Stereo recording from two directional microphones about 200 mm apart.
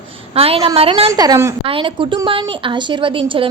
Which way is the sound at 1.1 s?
15° right (ahead or behind).